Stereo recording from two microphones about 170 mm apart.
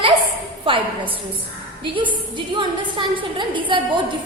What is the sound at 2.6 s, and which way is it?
A woman's voice, 30° right (ahead or behind).